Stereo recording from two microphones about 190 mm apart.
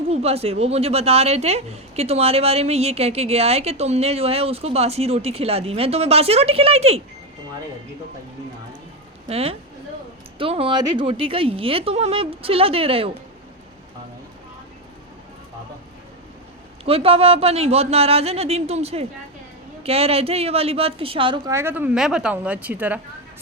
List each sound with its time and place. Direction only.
0.1 s speech: 35° right (ahead or behind)
9.3 s speech: 30° right (ahead or behind)
16.8 s speech: 30° right (ahead or behind)
21.5 s a woman's voice: 10° right (ahead or behind)